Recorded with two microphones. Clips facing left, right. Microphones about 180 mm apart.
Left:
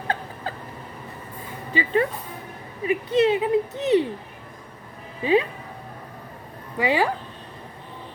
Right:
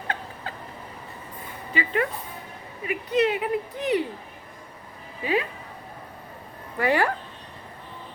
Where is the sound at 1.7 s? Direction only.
30° left (ahead or behind).